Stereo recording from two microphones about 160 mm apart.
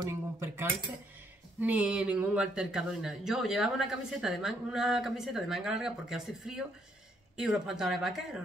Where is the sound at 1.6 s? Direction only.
10° right (ahead or behind).